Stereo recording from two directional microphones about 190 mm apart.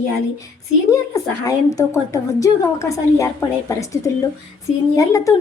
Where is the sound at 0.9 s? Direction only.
20° left (ahead or behind).